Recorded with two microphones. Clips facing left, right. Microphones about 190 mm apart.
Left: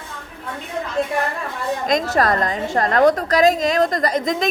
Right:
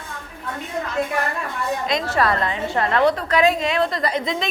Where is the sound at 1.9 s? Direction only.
45° left (ahead or behind).